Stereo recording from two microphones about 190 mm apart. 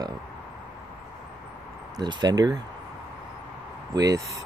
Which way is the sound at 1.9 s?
20° right (ahead or behind).